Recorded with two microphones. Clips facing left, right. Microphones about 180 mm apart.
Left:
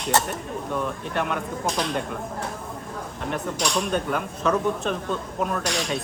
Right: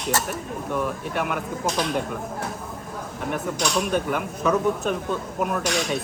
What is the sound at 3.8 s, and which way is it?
Speech, 5° right (ahead or behind).